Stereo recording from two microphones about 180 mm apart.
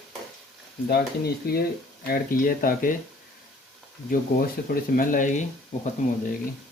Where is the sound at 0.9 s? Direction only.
60° left (ahead or behind).